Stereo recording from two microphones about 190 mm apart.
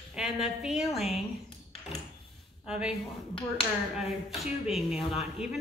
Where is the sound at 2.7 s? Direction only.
5° right (ahead or behind).